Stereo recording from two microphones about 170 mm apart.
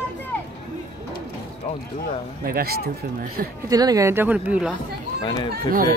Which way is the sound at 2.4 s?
60° right (ahead or behind).